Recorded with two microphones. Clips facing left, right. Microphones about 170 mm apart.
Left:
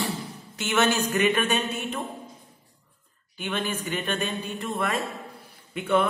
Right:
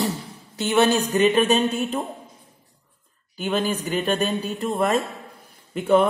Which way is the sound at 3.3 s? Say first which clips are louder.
Right 6 dB; 35° right (ahead or behind).